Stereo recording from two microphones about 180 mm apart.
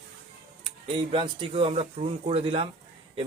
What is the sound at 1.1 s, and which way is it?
Speech, 30° right (ahead or behind).